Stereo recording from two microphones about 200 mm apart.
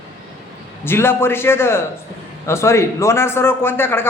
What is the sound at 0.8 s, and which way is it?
A man's voice, 10° left (ahead or behind).